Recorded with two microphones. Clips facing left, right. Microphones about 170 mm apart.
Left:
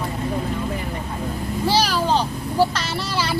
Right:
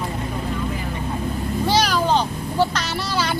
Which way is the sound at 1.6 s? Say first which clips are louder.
Even; 5° left (ahead or behind).